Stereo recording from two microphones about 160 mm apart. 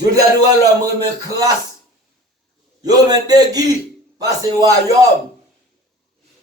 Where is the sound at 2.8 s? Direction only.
25° right (ahead or behind).